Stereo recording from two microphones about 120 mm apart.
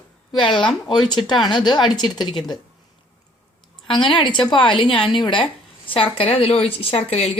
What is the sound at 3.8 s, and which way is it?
A woman's voice, 45° left (ahead or behind).